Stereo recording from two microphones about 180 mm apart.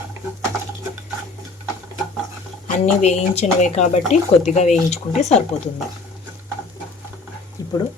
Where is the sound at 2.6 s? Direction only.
40° left (ahead or behind).